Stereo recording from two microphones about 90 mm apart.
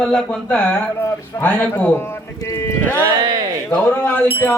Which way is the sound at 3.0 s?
50° right (ahead or behind).